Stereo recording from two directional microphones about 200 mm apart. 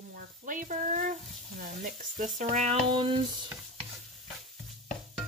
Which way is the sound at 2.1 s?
40° right (ahead or behind).